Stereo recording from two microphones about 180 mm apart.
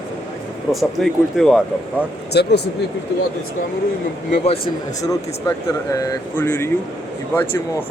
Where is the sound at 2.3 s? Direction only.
65° left (ahead or behind).